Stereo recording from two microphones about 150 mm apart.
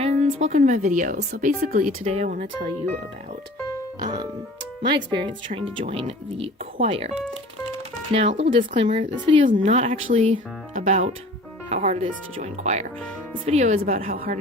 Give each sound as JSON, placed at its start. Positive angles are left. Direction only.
{"t": 0.0, "sound": "a woman's voice", "side_deg": -45}
{"t": 2.1, "sound": "a woman's voice", "side_deg": -55}
{"t": 4.0, "sound": "speech", "side_deg": -25}
{"t": 8.1, "sound": "speech", "side_deg": -40}
{"t": 9.5, "sound": "a woman's voice", "side_deg": -55}